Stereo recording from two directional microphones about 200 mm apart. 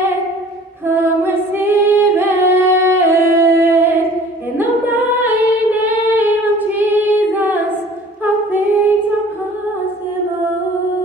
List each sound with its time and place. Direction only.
0.8 s music: 10° right (ahead or behind)
4.6 s singing: 10° right (ahead or behind)
7.2 s female singing: 10° right (ahead or behind)
8.2 s a capella: 10° right (ahead or behind)